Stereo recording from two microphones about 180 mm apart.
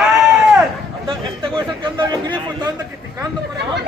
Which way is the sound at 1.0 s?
30° right (ahead or behind).